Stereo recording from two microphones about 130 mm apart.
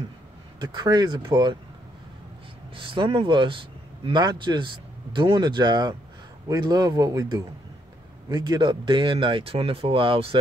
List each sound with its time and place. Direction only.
0.6 s speech: 35° right (ahead or behind)
2.7 s speech: 40° right (ahead or behind)